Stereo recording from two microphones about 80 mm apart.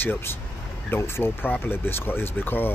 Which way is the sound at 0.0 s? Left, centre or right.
Left.